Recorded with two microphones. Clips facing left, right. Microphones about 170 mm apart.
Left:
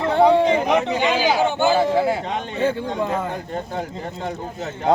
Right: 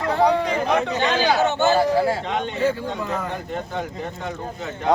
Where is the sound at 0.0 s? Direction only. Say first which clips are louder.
Left 4 dB; 25° left (ahead or behind).